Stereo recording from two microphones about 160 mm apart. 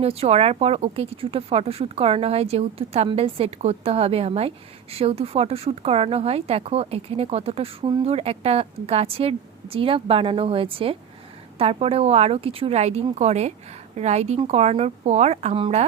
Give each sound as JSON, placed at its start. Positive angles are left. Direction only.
{"t": 0.0, "sound": "speech", "side_deg": -40}